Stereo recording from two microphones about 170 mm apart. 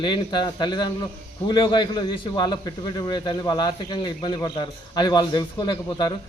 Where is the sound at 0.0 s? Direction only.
25° left (ahead or behind).